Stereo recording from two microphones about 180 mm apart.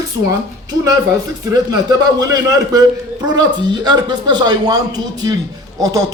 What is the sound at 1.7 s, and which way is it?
Speech, 20° right (ahead or behind).